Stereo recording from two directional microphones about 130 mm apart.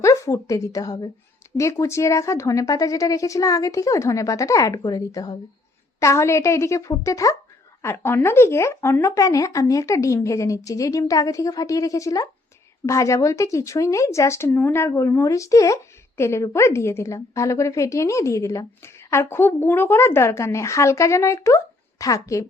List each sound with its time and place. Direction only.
0.0 s a woman's voice: 25° left (ahead or behind)